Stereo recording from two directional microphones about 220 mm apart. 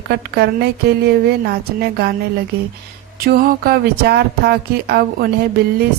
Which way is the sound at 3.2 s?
45° right (ahead or behind).